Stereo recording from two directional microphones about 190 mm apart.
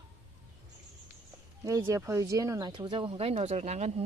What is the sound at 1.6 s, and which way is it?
Speech, 20° right (ahead or behind).